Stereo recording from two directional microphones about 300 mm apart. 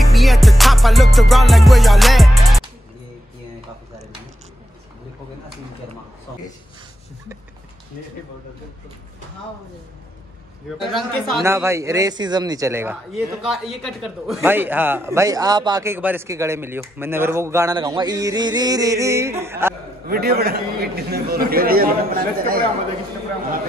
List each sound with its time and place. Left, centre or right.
0.0 s music: centre
10.8 s a man's voice: centre
20.1 s a man's voice: right